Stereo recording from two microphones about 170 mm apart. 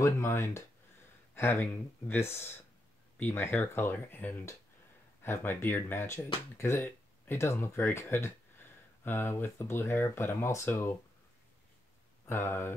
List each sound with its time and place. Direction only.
0.0 s speech: 15° left (ahead or behind)
12.3 s speech: 15° left (ahead or behind)